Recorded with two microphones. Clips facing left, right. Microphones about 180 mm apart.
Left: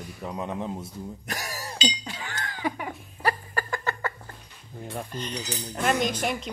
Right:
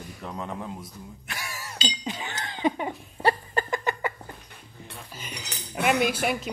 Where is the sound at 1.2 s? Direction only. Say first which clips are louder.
Even; 40° left (ahead or behind).